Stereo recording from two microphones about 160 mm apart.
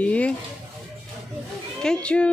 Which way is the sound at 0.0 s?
10° left (ahead or behind).